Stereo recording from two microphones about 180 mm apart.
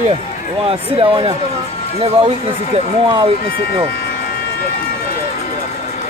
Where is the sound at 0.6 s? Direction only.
30° right (ahead or behind).